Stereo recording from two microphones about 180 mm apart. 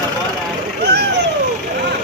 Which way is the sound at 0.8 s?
70° right (ahead or behind).